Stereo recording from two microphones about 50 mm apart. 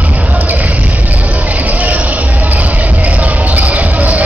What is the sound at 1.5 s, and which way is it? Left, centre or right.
Music, right.